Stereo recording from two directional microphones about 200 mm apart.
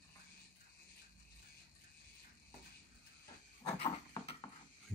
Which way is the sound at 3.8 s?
30° left (ahead or behind).